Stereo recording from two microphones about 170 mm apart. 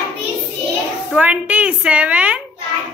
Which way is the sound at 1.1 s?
5° right (ahead or behind).